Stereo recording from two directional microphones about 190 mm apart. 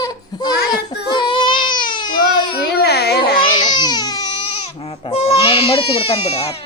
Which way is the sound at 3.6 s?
20° left (ahead or behind).